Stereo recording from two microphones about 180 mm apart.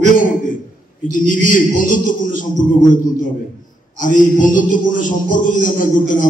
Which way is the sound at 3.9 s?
45° left (ahead or behind).